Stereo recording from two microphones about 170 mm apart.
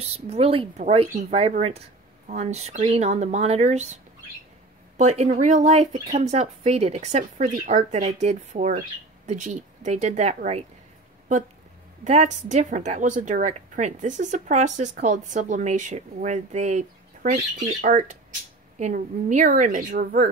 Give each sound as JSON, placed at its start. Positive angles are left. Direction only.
{"t": 0.0, "sound": "a woman's voice", "side_deg": -40}
{"t": 12.0, "sound": "a woman's voice", "side_deg": -45}